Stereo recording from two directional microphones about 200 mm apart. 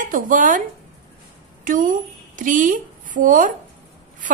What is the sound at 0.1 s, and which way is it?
A woman's voice, 40° right (ahead or behind).